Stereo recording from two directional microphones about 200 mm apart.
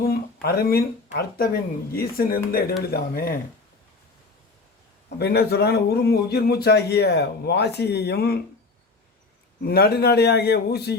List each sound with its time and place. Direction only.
0.4 s a man's voice: 50° left (ahead or behind)
5.2 s a man's voice: 55° left (ahead or behind)
9.6 s a man's voice: 50° left (ahead or behind)